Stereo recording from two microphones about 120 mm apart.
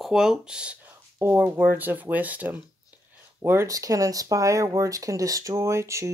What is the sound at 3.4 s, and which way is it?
Speech, 25° right (ahead or behind).